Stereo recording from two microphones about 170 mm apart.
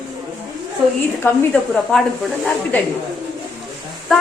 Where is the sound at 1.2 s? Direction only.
15° left (ahead or behind).